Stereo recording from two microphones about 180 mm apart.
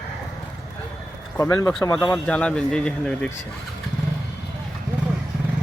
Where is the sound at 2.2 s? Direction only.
5° left (ahead or behind).